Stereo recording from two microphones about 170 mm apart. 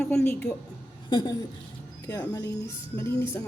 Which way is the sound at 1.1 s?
25° left (ahead or behind).